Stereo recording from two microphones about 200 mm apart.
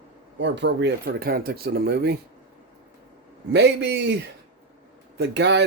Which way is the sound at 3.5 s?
55° right (ahead or behind).